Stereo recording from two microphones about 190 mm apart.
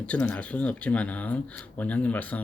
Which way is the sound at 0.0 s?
5° left (ahead or behind).